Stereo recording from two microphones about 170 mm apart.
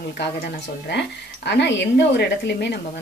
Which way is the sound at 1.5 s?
85° left.